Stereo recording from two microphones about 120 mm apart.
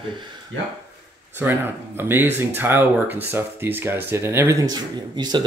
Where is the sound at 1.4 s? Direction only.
20° right (ahead or behind).